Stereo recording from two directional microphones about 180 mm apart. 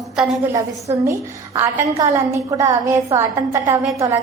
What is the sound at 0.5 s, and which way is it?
A woman's voice, 15° right (ahead or behind).